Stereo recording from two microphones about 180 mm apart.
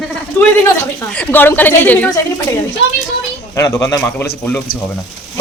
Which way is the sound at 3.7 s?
15° left (ahead or behind).